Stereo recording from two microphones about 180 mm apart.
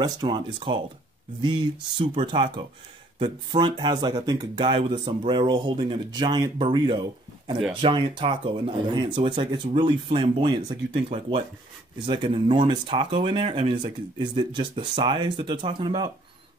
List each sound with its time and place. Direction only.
0.0 s speech: 25° right (ahead or behind)